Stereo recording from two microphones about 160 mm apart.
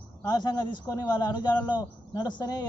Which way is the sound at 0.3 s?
25° left (ahead or behind).